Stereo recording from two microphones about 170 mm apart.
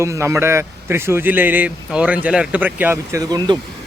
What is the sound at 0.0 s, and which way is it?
A man's voice, 15° right (ahead or behind).